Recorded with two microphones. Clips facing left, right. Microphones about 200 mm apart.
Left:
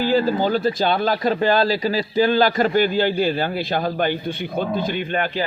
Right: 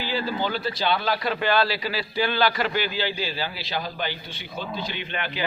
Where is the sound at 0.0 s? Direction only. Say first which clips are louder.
Left 9 dB; 45° left (ahead or behind).